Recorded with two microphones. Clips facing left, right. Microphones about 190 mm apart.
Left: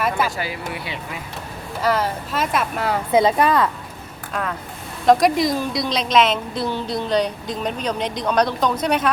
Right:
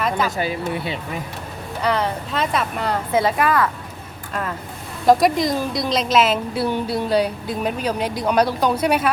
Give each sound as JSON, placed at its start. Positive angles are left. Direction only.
{"t": 0.3, "sound": "speech", "side_deg": -20}
{"t": 1.8, "sound": "speech", "side_deg": 5}
{"t": 3.1, "sound": "speech", "side_deg": 20}
{"t": 5.0, "sound": "a woman's voice", "side_deg": 0}